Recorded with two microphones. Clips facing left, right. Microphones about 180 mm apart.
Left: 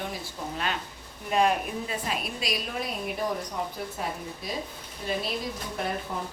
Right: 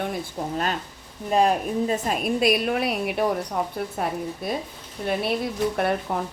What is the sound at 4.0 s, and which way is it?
Speech, 55° right (ahead or behind).